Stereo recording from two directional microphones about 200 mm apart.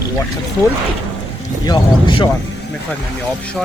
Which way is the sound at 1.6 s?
20° left (ahead or behind).